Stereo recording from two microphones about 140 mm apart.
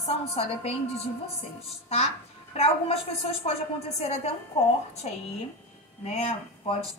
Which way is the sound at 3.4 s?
50° left (ahead or behind).